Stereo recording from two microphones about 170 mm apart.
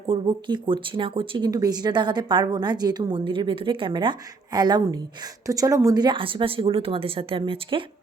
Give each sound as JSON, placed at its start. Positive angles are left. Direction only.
{"t": 0.1, "sound": "speech", "side_deg": -30}